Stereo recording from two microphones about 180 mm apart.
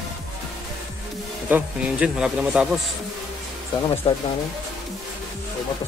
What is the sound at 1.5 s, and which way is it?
Speech, 5° right (ahead or behind).